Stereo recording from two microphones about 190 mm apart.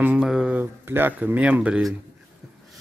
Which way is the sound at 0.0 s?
5° right (ahead or behind).